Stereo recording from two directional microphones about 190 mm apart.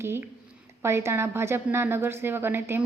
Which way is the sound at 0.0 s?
10° right (ahead or behind).